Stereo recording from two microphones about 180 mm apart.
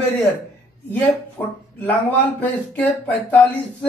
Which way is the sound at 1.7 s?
10° left (ahead or behind).